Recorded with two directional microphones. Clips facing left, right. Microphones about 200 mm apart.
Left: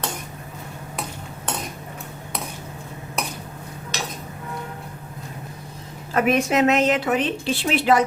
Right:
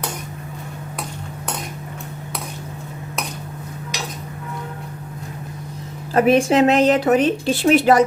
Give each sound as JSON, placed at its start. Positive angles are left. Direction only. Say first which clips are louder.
{"t": 6.1, "sound": "speech", "louder": "right 5 dB", "side_deg": -30}